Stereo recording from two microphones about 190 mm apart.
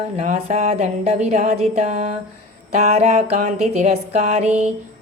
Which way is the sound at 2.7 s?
35° right (ahead or behind).